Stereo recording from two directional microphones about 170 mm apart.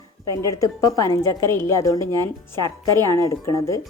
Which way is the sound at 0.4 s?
20° left (ahead or behind).